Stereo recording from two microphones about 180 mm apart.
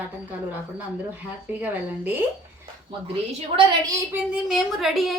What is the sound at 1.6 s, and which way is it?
Speech, 10° right (ahead or behind).